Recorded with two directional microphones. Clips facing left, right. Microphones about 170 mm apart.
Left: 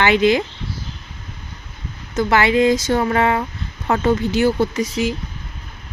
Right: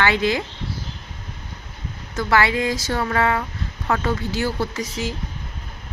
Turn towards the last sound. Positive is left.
turn(degrees=15)  # may be behind; listen again after turning